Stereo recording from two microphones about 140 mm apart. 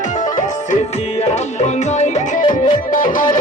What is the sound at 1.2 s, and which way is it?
Music, 55° left (ahead or behind).